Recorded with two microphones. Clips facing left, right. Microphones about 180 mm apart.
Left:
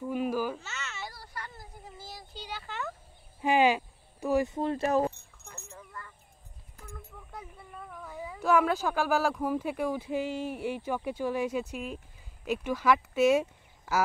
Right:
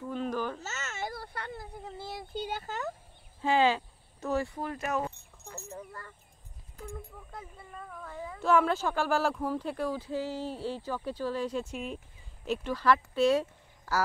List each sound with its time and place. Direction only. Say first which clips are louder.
0.0 s babbling: left 3 dB; 10° left (ahead or behind)
0.6 s a sound: right 3 dB; 45° right (ahead or behind)
3.3 s speech: left 1 dB; 15° left (ahead or behind); by 5.1 s 30° left (ahead or behind)
5.8 s a sound: right 3 dB; 40° right (ahead or behind)
7.3 s cat: even; centre (ahead or behind)
9.4 s speech: left 2 dB; 10° left (ahead or behind)
11.7 s speech: even; centre (ahead or behind)
12.4 s speech: left 1 dB; 15° left (ahead or behind)